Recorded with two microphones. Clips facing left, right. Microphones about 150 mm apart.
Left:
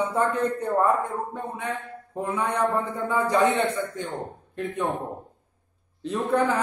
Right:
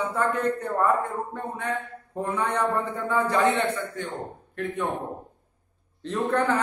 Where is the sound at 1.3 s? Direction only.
10° left (ahead or behind).